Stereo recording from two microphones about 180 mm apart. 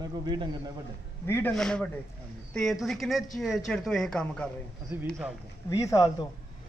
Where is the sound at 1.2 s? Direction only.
15° left (ahead or behind).